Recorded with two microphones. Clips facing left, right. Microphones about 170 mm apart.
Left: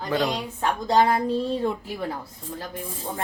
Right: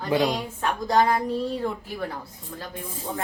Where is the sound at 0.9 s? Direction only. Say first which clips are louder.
Left 1 dB; 25° left (ahead or behind).